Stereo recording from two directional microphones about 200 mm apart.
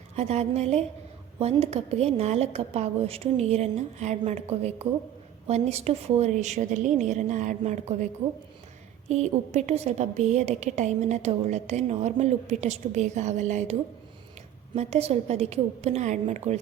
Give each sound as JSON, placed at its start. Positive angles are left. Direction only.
{"t": 0.2, "sound": "a woman's voice", "side_deg": -35}
{"t": 14.8, "sound": "a woman's voice", "side_deg": -30}